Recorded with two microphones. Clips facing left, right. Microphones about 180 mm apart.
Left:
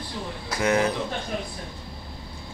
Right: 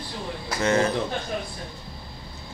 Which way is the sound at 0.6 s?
10° left (ahead or behind).